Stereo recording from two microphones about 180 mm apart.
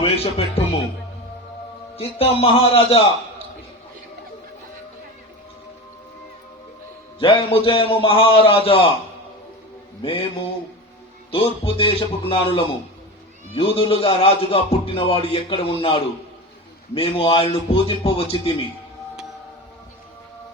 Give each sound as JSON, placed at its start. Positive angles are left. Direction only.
{"t": 0.0, "sound": "a man's voice", "side_deg": 35}
{"t": 2.0, "sound": "speech", "side_deg": 35}
{"t": 7.2, "sound": "a man's voice", "side_deg": 30}
{"t": 10.0, "sound": "a man's voice", "side_deg": 30}
{"t": 11.3, "sound": "speech", "side_deg": 30}